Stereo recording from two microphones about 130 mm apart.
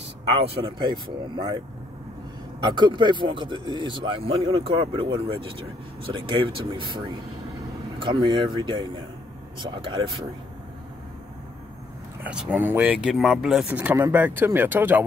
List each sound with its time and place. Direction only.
0.3 s speech: 45° right (ahead or behind)
2.6 s speech: 35° right (ahead or behind)
8.0 s speech: 40° right (ahead or behind)
12.2 s speech: 10° right (ahead or behind)
13.7 s speech: 15° right (ahead or behind)